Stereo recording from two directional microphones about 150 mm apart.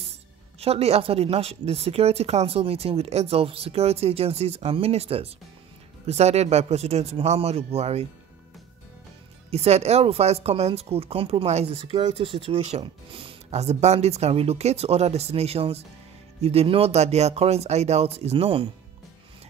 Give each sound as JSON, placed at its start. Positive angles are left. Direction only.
{"t": 0.6, "sound": "speech", "side_deg": -45}
{"t": 9.5, "sound": "speech", "side_deg": -45}